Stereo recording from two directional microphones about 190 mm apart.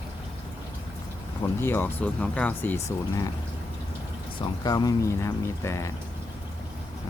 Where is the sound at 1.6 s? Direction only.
10° left (ahead or behind).